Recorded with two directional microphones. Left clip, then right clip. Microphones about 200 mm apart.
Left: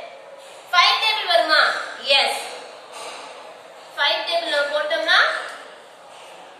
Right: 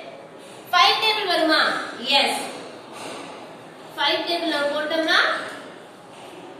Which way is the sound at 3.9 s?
20° right (ahead or behind).